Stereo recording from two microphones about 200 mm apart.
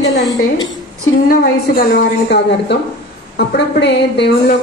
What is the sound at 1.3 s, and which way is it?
A woman's voice, 45° left (ahead or behind).